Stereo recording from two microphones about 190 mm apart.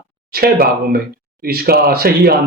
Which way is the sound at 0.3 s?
50° right (ahead or behind).